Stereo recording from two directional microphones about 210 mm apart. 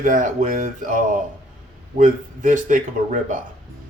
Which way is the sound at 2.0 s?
40° right (ahead or behind).